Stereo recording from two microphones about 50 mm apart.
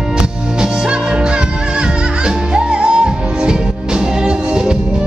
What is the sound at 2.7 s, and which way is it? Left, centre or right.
Music, centre.